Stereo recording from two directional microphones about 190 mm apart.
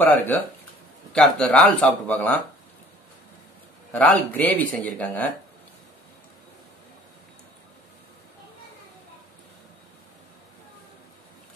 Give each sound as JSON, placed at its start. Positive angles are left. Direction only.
{"t": 0.0, "sound": "speech", "side_deg": 10}
{"t": 3.9, "sound": "speech", "side_deg": 10}